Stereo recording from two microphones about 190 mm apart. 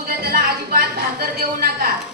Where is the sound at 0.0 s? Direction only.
55° right (ahead or behind).